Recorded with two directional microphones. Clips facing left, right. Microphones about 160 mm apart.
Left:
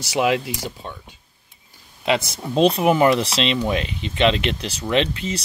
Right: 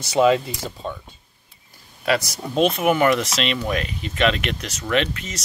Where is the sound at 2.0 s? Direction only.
25° left (ahead or behind).